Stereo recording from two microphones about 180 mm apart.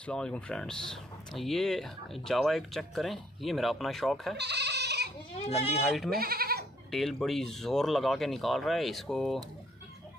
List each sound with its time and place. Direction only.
0.0 s speech: 5° left (ahead or behind)
4.4 s goat: 70° right (ahead or behind)
5.9 s speech: centre (ahead or behind)
6.1 s speech: 55° right (ahead or behind)
6.9 s speech: centre (ahead or behind)